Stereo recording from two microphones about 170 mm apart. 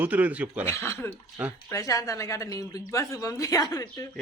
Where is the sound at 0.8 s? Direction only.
15° left (ahead or behind).